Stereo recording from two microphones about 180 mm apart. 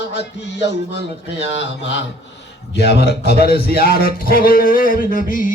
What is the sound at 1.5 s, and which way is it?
Speech, 85° left.